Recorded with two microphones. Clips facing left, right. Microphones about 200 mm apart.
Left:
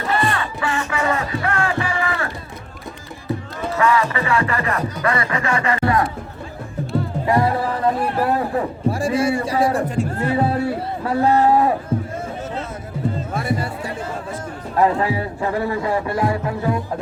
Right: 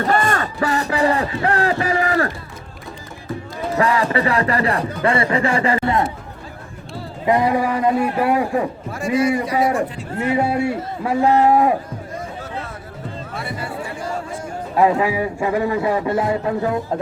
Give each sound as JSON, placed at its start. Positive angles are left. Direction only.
{"t": 0.1, "sound": "music", "side_deg": -45}
{"t": 3.8, "sound": "music", "side_deg": -35}
{"t": 7.3, "sound": "speech", "side_deg": -15}
{"t": 8.9, "sound": "a man's voice", "side_deg": 30}
{"t": 9.7, "sound": "a man's voice", "side_deg": 45}
{"t": 10.2, "sound": "speech", "side_deg": -15}
{"t": 13.3, "sound": "music", "side_deg": 45}
{"t": 14.8, "sound": "speech", "side_deg": -15}